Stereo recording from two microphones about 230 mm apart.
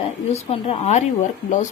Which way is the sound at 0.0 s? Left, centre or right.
Left.